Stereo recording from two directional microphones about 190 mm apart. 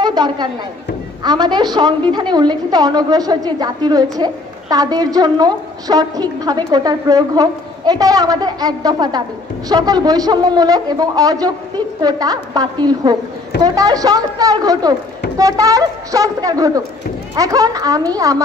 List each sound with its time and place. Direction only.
0.0 s a woman's voice: 20° right (ahead or behind)